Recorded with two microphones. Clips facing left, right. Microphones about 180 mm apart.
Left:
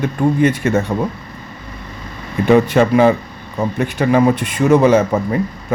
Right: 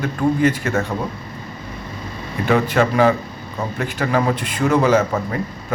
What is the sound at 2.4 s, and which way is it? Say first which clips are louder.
Speech: left 5 dB; 25° left (ahead or behind).